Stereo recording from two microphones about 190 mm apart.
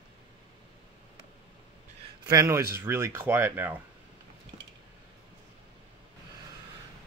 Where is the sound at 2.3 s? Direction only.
15° right (ahead or behind).